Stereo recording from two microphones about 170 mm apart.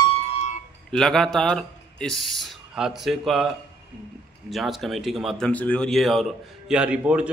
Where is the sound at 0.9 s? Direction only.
5° left (ahead or behind).